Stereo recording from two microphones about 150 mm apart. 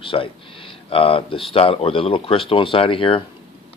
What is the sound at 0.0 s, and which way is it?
Speech, 35° left (ahead or behind).